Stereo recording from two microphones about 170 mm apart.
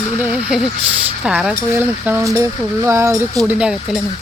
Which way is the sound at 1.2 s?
5° right (ahead or behind).